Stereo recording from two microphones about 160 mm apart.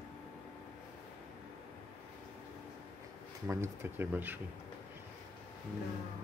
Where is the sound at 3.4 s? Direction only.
15° right (ahead or behind).